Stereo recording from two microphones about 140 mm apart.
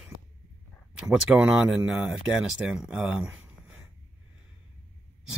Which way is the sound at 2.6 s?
5° right (ahead or behind).